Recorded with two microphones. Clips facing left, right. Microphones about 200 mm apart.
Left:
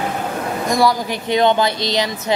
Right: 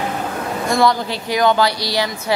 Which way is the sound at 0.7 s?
15° left (ahead or behind).